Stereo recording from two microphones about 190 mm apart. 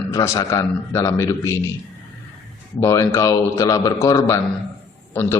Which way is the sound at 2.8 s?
15° left (ahead or behind).